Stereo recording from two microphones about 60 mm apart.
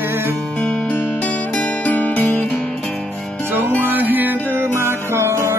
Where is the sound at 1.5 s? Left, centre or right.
Left.